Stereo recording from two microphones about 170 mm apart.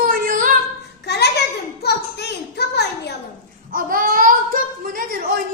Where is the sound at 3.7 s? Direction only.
55° right (ahead or behind).